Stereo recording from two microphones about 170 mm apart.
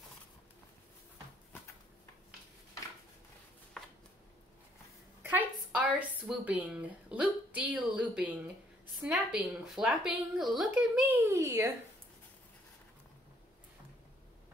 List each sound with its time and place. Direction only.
3.8 s chopping: 5° left (ahead or behind)
5.2 s a woman's voice: 10° right (ahead or behind)
11.2 s speech: 15° right (ahead or behind)